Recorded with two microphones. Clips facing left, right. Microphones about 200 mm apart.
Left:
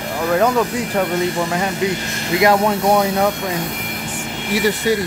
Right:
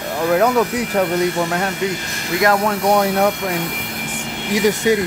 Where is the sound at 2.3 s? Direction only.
15° left (ahead or behind).